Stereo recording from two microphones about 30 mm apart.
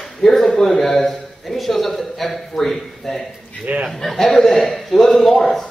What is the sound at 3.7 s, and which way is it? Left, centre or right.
Speech, right.